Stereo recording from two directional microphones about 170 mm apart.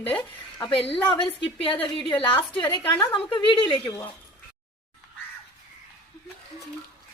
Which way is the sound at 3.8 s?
15° left (ahead or behind).